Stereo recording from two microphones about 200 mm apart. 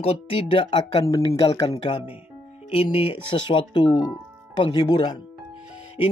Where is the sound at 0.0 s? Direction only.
30° left (ahead or behind).